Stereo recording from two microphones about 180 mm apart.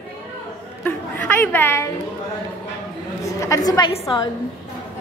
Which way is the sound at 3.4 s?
20° left (ahead or behind).